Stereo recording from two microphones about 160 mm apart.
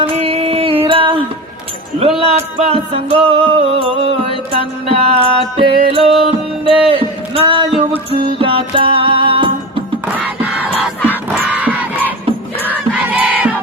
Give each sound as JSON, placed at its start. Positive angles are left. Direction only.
{"t": 0.0, "sound": "music", "side_deg": -40}
{"t": 6.7, "sound": "a sound", "side_deg": -35}
{"t": 8.1, "sound": "music", "side_deg": -35}
{"t": 10.2, "sound": "music", "side_deg": -10}
{"t": 10.8, "sound": "crowd", "side_deg": -10}